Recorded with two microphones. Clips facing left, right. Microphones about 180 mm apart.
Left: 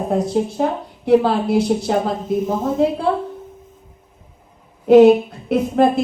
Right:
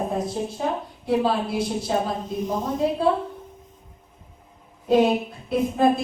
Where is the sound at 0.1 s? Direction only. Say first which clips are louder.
Left 8 dB; 70° left (ahead or behind).